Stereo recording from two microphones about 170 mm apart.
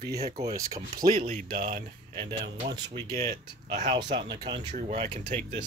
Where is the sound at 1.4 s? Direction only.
55° right (ahead or behind).